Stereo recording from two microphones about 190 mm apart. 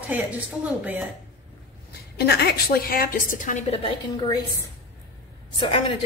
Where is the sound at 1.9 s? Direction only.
60° left (ahead or behind); by 3.9 s 35° left (ahead or behind).